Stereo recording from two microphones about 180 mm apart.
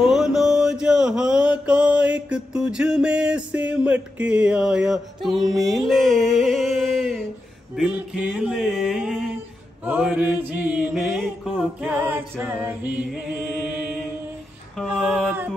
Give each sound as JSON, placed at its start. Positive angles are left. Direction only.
{"t": 0.0, "sound": "mantra", "side_deg": 0}
{"t": 7.7, "sound": "a sound", "side_deg": -5}
{"t": 9.8, "sound": "chant", "side_deg": -10}
{"t": 14.8, "sound": "female singing", "side_deg": -5}